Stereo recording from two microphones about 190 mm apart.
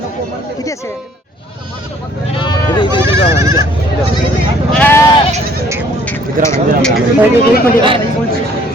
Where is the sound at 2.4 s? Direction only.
25° left (ahead or behind).